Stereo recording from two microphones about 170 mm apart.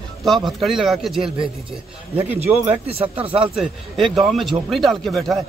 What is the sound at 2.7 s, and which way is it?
Speech, 35° right (ahead or behind).